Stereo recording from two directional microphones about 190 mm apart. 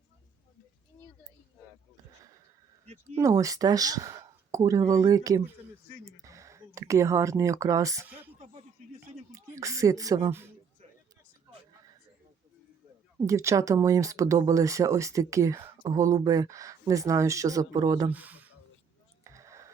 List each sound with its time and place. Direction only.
2.8 s speech: 35° right (ahead or behind)
3.2 s speech: 15° right (ahead or behind)
9.3 s speech: 15° right (ahead or behind)
13.1 s speech: 15° right (ahead or behind)
18.1 s speech: 10° right (ahead or behind)
19.2 s a sound: 15° right (ahead or behind)